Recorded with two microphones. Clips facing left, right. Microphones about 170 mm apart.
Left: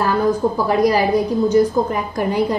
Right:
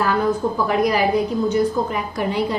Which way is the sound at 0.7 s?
35° left (ahead or behind).